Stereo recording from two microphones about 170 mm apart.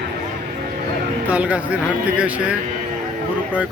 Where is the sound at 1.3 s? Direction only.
10° right (ahead or behind).